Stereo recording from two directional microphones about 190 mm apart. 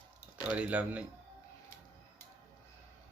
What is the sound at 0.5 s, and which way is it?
Speech, 5° right (ahead or behind).